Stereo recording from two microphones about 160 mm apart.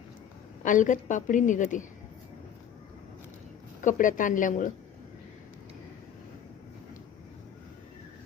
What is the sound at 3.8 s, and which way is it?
Speech, 55° left (ahead or behind).